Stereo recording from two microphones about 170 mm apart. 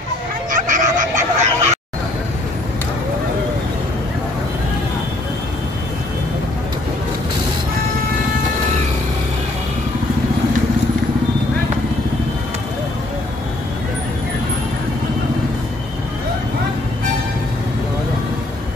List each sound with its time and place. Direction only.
0.5 s fowl: 50° right (ahead or behind)